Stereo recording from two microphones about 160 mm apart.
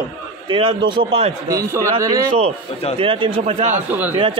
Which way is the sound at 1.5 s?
20° right (ahead or behind).